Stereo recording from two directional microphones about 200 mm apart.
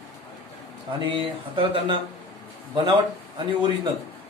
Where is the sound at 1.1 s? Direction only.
25° right (ahead or behind).